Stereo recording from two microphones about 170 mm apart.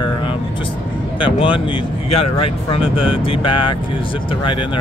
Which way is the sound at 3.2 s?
30° left (ahead or behind).